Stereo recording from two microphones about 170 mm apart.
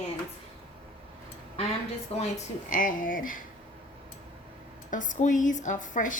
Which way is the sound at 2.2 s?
45° left (ahead or behind).